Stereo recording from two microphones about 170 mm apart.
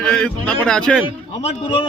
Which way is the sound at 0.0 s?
5° left (ahead or behind).